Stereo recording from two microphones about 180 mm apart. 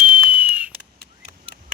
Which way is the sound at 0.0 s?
10° right (ahead or behind).